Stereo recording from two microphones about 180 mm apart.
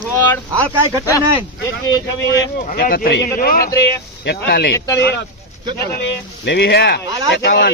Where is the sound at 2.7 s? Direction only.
55° left (ahead or behind).